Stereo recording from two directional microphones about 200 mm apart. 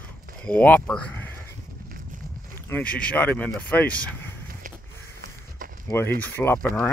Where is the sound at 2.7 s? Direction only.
5° left (ahead or behind).